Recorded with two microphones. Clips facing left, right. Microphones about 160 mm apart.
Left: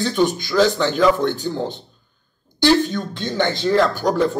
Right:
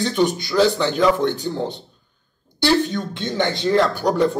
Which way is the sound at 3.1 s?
20° right (ahead or behind).